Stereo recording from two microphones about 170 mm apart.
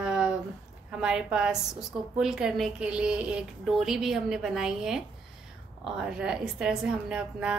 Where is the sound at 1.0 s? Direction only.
5° right (ahead or behind).